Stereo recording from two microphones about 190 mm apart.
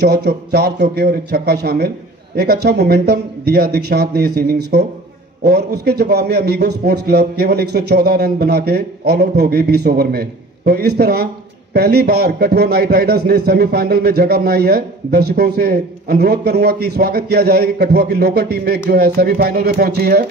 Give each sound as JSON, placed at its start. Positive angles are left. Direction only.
{"t": 0.0, "sound": "a man's voice", "side_deg": -60}